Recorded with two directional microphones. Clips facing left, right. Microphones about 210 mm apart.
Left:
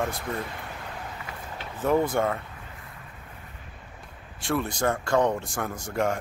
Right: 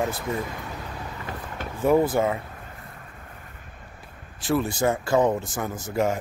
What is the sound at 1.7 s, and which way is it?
Speech, 5° right (ahead or behind).